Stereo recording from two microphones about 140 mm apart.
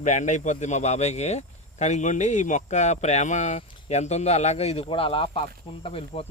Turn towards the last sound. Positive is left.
turn(degrees=45)  # may be behind; listen again after turning